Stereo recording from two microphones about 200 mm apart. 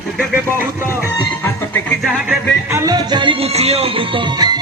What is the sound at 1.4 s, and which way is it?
Music, 10° left (ahead or behind).